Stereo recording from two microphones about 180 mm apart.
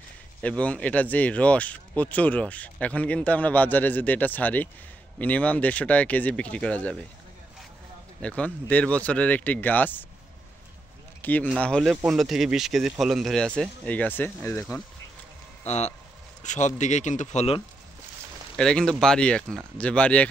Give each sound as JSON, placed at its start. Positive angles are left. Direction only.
{"t": 0.4, "sound": "speech", "side_deg": 5}
{"t": 8.2, "sound": "speech", "side_deg": 5}
{"t": 11.1, "sound": "a sound", "side_deg": 10}
{"t": 11.4, "sound": "speech", "side_deg": 5}
{"t": 15.6, "sound": "a man's voice", "side_deg": 40}
{"t": 18.6, "sound": "speech", "side_deg": 5}